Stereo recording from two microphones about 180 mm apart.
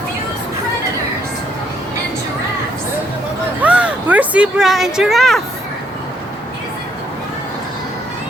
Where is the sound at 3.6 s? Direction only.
5° right (ahead or behind).